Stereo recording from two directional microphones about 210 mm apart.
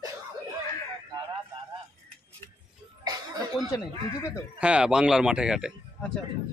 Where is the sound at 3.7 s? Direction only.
15° left (ahead or behind).